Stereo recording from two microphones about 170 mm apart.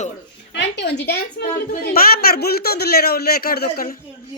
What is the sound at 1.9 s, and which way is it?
Speech, 60° left (ahead or behind).